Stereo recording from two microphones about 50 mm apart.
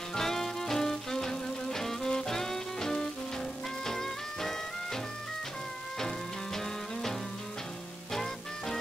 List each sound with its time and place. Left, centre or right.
0.1 s music: centre